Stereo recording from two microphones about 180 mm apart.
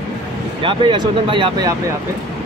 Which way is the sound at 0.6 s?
25° right (ahead or behind).